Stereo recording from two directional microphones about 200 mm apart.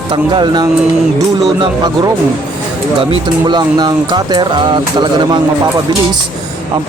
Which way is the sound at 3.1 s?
20° right (ahead or behind).